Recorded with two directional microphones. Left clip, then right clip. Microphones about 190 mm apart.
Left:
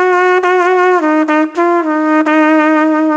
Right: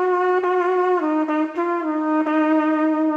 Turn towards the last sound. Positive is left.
turn(degrees=30)  # may be behind; listen again after turning